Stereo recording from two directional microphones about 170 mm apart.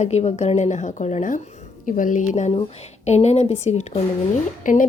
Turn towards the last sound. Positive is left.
turn(degrees=50)  # may be behind; listen again after turning